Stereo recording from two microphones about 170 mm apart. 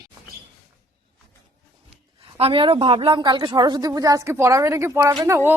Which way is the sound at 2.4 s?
30° right (ahead or behind).